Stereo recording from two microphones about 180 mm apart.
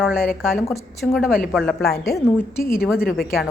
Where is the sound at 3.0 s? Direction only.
55° left (ahead or behind).